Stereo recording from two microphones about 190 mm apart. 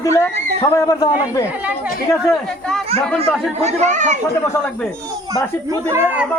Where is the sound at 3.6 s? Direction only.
40° right (ahead or behind).